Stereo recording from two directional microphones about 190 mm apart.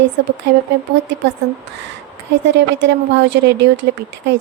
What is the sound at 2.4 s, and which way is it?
A woman's voice, 70° right (ahead or behind).